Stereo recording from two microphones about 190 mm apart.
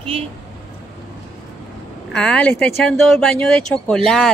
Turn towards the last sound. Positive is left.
turn(degrees=5)  # may be behind; listen again after turning